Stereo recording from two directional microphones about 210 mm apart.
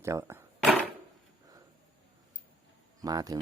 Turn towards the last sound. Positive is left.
turn(degrees=-15)  # may be behind; listen again after turning